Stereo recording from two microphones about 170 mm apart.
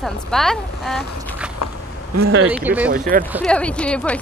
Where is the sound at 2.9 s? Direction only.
55° right (ahead or behind).